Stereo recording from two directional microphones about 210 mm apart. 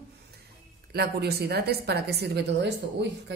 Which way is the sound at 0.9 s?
50° right (ahead or behind).